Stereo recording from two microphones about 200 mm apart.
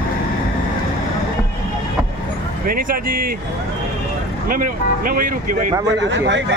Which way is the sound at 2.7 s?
45° right (ahead or behind).